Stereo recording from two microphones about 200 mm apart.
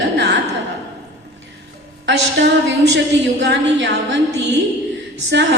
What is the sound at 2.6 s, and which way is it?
A woman's voice, 65° right (ahead or behind).